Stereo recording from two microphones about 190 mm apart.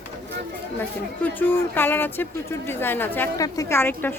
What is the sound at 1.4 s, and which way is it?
Speech, 10° left (ahead or behind).